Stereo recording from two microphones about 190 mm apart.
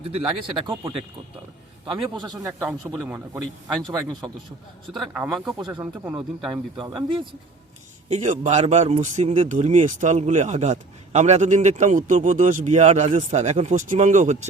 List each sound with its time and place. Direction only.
0.3 s a man's voice: 25° right (ahead or behind)
1.8 s a man's voice: 25° right (ahead or behind)
2.5 s a man's voice: 10° right (ahead or behind)
4.9 s speech: 5° right (ahead or behind)
5.5 s a man's voice: 20° right (ahead or behind)
6.1 s a man's voice: 10° right (ahead or behind)
6.5 s a man's voice: 25° right (ahead or behind)
8.1 s speech: 40° right (ahead or behind)